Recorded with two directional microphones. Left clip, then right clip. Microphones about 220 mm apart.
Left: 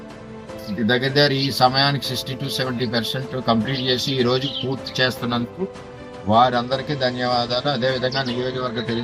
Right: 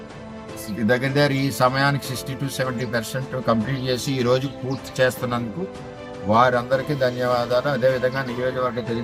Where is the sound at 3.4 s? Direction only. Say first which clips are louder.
Left 2 dB; 20° right (ahead or behind).